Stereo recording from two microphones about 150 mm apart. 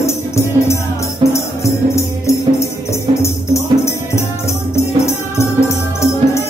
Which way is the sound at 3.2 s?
20° left (ahead or behind).